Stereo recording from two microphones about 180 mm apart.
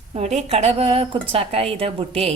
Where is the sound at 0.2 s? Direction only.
35° right (ahead or behind).